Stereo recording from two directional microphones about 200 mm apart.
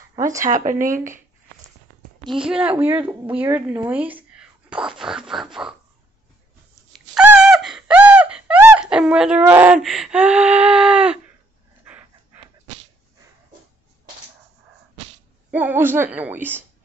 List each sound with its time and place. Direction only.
0.1 s speech: 15° right (ahead or behind)
0.5 s speech: 35° right (ahead or behind)
2.3 s a woman's voice: 5° right (ahead or behind)
6.9 s a sound: 5° right (ahead or behind)
15.5 s a woman's voice: 10° right (ahead or behind)